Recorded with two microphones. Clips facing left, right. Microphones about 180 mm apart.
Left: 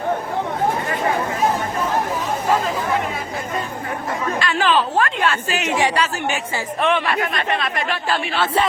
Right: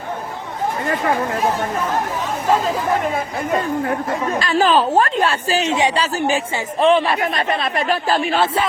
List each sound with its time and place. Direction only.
4.4 s speech: 35° right (ahead or behind)